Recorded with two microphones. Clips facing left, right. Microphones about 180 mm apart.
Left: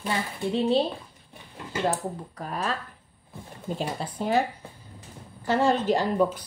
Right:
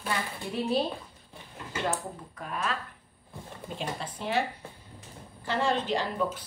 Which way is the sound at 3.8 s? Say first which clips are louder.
Left 4 dB; 40° left (ahead or behind).